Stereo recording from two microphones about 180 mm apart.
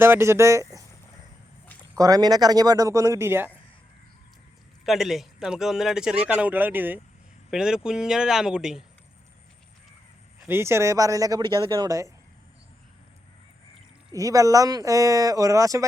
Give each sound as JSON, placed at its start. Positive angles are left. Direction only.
{"t": 0.0, "sound": "speech", "side_deg": -15}
{"t": 2.0, "sound": "speech", "side_deg": -20}
{"t": 4.9, "sound": "speech", "side_deg": 0}
{"t": 10.4, "sound": "speech", "side_deg": -15}
{"t": 14.1, "sound": "speech", "side_deg": -20}